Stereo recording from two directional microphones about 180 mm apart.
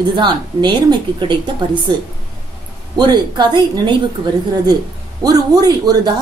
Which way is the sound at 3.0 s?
25° right (ahead or behind).